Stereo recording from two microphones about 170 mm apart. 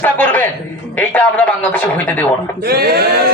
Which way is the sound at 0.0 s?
10° left (ahead or behind).